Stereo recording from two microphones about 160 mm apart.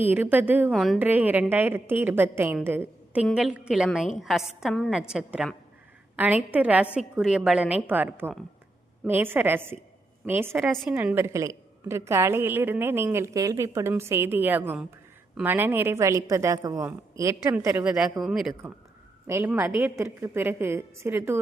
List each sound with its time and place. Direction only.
0.0 s a woman's voice: 10° right (ahead or behind)
0.7 s a woman's voice: centre (ahead or behind)
0.9 s a woman's voice: 10° right (ahead or behind)
19.3 s a woman's voice: 15° right (ahead or behind)